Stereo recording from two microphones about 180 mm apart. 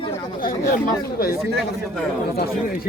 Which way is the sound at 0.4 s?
50° left (ahead or behind).